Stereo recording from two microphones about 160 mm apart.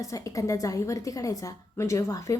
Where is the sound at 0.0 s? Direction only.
20° left (ahead or behind).